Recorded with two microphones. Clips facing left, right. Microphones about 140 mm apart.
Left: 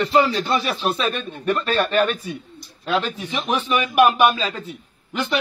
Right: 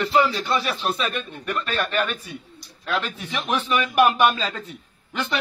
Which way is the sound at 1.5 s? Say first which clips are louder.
Left 7 dB; 40° left (ahead or behind).